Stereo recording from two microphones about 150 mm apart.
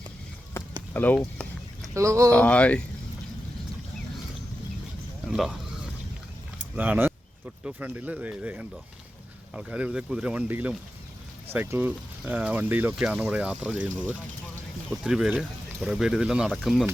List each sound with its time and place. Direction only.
0.6 s a sound: 15° left (ahead or behind)
0.9 s speech: 10° left (ahead or behind)
1.9 s speech: 20° right (ahead or behind)
2.3 s speech: 10° left (ahead or behind)
5.3 s a sound: 5° right (ahead or behind)
6.7 s speech: 10° right (ahead or behind)
14.8 s speech: 5° right (ahead or behind)